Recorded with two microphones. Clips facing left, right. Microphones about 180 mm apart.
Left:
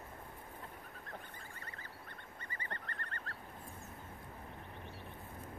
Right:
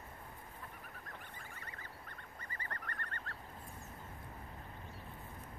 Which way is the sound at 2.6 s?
30° left (ahead or behind).